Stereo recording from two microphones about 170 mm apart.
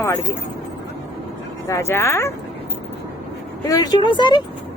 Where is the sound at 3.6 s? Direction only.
20° left (ahead or behind).